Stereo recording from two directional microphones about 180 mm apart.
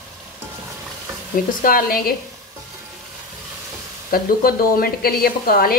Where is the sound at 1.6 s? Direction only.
50° left (ahead or behind).